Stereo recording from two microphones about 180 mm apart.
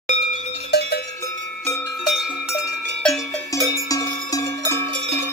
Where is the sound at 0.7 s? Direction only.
65° left (ahead or behind).